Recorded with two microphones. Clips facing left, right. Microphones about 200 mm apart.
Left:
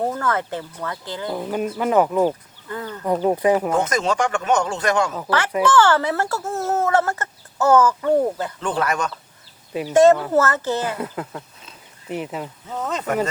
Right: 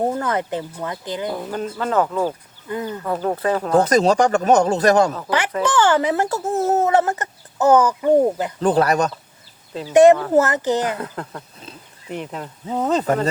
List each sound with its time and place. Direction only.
0.0 s speech: 20° right (ahead or behind)
1.3 s speech: 15° left (ahead or behind)
2.6 s speech: 15° right (ahead or behind)
3.0 s speech: 15° left (ahead or behind)
3.7 s speech: 35° right (ahead or behind)
5.6 s speech: 15° right (ahead or behind)
8.6 s speech: 35° right (ahead or behind)
9.9 s speech: 15° right (ahead or behind)
10.9 s speech: 10° left (ahead or behind)
12.6 s speech: 35° right (ahead or behind)